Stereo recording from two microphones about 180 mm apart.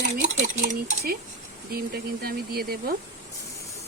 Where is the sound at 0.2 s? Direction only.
45° right (ahead or behind).